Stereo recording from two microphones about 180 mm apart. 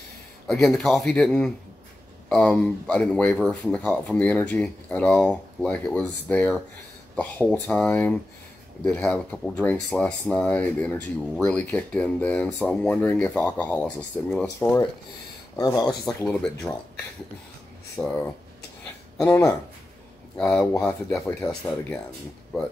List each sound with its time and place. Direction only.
0.5 s speech: centre (ahead or behind)
15.5 s speech: 20° left (ahead or behind)
17.9 s speech: 10° left (ahead or behind)